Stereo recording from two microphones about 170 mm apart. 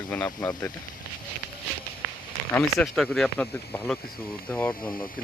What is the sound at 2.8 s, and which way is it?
Speech, centre (ahead or behind).